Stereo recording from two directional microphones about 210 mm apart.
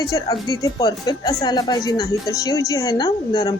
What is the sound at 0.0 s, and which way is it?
Speech, 15° left (ahead or behind).